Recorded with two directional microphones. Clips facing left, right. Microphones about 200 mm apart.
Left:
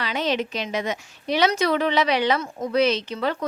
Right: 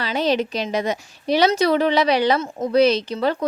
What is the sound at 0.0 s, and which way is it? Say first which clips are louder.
A woman's voice: right 4 dB; 35° right (ahead or behind).